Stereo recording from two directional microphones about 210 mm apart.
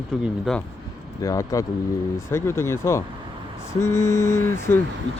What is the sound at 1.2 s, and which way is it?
Speech, 15° left (ahead or behind).